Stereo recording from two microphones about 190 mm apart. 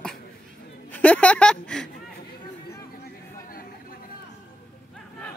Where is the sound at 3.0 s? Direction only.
50° left (ahead or behind).